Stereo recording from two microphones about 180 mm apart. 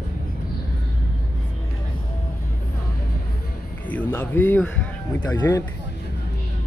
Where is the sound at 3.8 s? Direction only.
10° left (ahead or behind).